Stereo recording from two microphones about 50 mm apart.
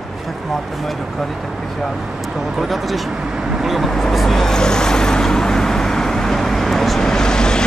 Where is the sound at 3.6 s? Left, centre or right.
Centre.